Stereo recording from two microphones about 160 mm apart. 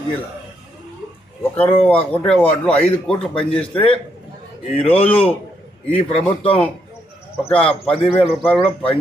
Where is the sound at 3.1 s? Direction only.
35° left (ahead or behind).